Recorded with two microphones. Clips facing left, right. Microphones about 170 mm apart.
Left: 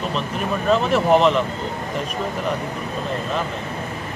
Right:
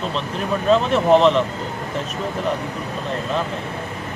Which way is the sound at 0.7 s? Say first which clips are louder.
Right 2 dB; 5° left (ahead or behind).